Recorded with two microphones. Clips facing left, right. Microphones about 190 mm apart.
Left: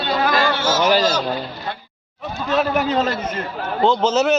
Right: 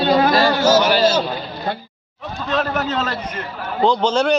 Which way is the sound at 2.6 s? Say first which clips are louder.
Left 4 dB; 10° left (ahead or behind).